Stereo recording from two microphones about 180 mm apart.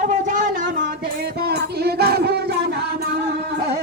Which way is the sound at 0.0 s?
45° right (ahead or behind).